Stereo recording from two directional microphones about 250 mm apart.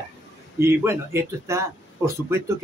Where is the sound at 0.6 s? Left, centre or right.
Centre.